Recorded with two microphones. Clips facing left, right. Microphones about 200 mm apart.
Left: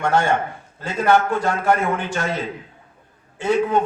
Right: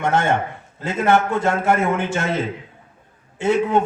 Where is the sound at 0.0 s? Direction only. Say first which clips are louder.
Even; 20° right (ahead or behind).